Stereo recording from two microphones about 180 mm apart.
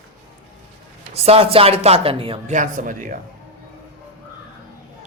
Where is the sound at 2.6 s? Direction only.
45° right (ahead or behind).